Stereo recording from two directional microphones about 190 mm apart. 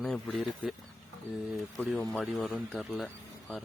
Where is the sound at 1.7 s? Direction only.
Centre (ahead or behind).